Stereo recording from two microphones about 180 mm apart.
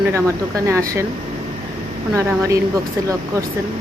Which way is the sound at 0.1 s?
15° right (ahead or behind).